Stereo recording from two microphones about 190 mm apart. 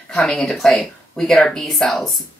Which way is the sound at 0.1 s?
5° left (ahead or behind).